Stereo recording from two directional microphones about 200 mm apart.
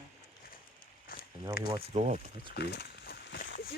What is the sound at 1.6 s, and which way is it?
Speech, 50° left (ahead or behind).